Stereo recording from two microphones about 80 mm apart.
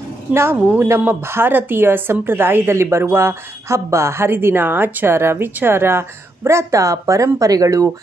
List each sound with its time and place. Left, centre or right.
0.3 s a woman's voice: right